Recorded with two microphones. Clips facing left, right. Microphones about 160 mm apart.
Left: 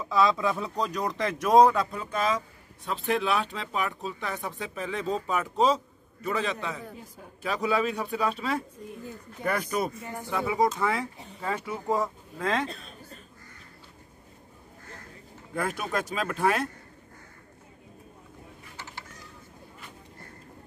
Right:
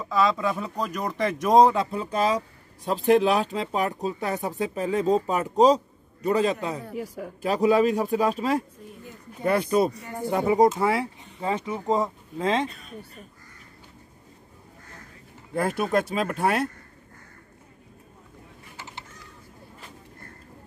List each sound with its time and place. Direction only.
0.0 s speech: centre (ahead or behind); by 6.8 s 40° right (ahead or behind)
7.0 s speech: 75° right (ahead or behind)
7.4 s speech: 40° right (ahead or behind)
9.4 s speech: 30° right (ahead or behind)
10.3 s speech: 40° right (ahead or behind)
10.8 s speech: 30° right (ahead or behind)
11.4 s speech: 20° right (ahead or behind)
15.5 s speech: 30° right (ahead or behind)